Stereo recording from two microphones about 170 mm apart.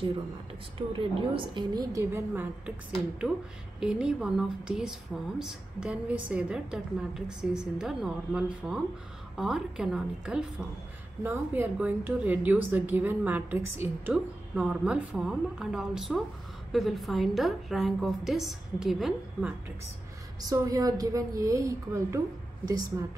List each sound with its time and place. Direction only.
0.7 s a woman's voice: 30° right (ahead or behind); by 2.7 s 15° right (ahead or behind)
3.8 s a woman's voice: 5° right (ahead or behind)
20.4 s a woman's voice: 20° right (ahead or behind)